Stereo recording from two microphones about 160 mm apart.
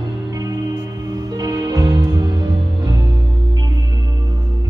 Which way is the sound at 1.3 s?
25° right (ahead or behind).